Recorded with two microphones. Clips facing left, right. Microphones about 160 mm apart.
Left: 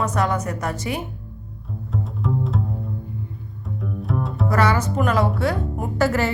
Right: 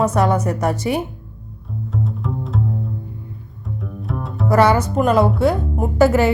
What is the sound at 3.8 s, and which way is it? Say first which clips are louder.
Music: left 2 dB; centre (ahead or behind).